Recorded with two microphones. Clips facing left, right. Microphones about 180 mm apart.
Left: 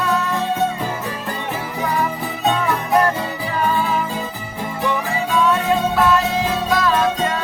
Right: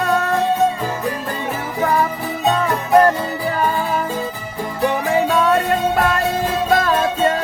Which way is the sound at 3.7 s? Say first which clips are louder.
Even; 45° right (ahead or behind).